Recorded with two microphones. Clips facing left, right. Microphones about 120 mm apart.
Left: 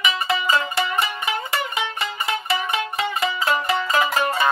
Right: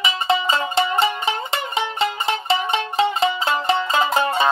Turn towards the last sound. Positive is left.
turn(degrees=-25)  # may be behind; listen again after turning